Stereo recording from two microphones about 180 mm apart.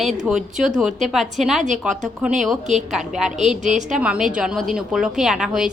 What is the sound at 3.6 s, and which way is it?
Speech, 40° right (ahead or behind).